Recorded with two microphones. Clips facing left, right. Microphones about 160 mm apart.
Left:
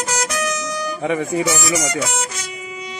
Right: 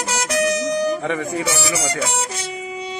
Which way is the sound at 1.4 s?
30° right (ahead or behind).